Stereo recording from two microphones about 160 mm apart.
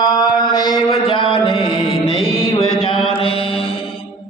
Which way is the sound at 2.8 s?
35° left (ahead or behind).